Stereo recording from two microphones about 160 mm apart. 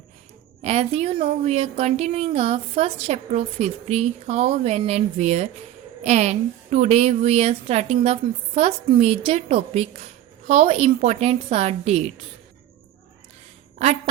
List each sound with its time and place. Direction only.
0.6 s a woman's voice: 40° right (ahead or behind)